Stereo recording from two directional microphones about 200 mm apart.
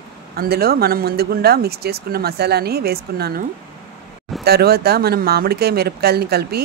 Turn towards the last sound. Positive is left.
turn(degrees=-50)  # may be behind; listen again after turning